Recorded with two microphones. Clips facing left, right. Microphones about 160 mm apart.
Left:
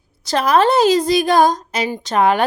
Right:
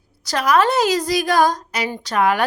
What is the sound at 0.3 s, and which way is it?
A child's voice, 25° left (ahead or behind).